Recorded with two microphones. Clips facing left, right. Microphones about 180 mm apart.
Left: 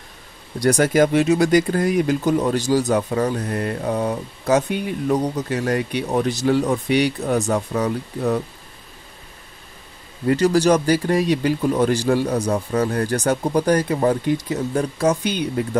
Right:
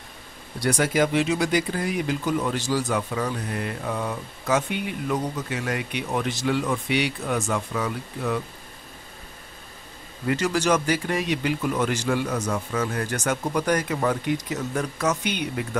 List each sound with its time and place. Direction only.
0.6 s speech: 40° left (ahead or behind)
10.2 s speech: 35° left (ahead or behind)